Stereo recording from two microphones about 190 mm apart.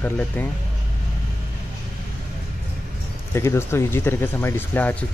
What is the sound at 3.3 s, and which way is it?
Speech, 15° left (ahead or behind).